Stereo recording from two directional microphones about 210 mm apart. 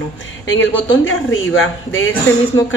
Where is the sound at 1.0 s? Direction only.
70° left (ahead or behind).